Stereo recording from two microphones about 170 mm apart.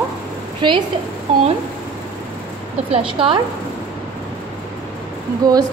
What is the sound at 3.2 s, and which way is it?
Speech, 30° right (ahead or behind).